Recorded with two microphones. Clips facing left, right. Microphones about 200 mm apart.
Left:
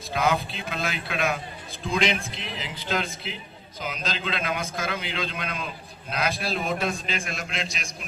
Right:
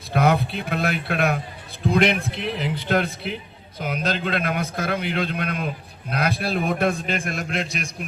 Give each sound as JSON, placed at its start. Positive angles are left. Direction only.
{"t": 0.1, "sound": "a man's voice", "side_deg": -60}